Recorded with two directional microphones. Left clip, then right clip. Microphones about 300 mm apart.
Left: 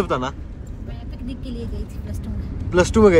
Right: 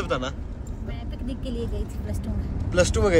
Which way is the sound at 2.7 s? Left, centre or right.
Centre.